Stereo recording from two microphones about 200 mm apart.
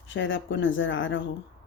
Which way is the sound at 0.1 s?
70° left (ahead or behind).